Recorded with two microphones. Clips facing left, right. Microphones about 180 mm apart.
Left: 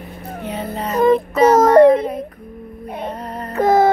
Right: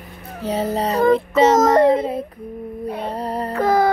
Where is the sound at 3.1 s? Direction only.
35° right (ahead or behind).